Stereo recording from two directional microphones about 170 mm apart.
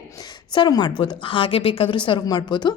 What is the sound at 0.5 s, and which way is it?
A woman's voice, 25° left (ahead or behind).